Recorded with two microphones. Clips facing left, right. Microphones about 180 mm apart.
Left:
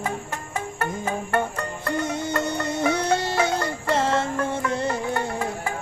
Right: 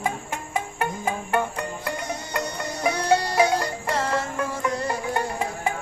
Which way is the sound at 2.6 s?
25° left (ahead or behind).